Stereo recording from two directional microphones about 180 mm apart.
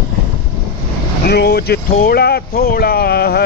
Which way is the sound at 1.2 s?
70° left (ahead or behind).